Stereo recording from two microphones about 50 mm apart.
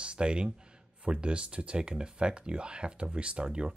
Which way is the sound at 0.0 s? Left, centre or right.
Centre.